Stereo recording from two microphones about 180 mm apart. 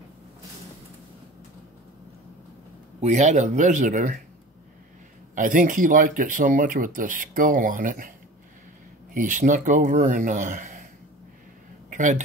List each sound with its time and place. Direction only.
3.0 s speech: 40° right (ahead or behind)
5.3 s speech: 45° right (ahead or behind)
9.1 s speech: 45° right (ahead or behind)
11.9 s speech: 45° right (ahead or behind)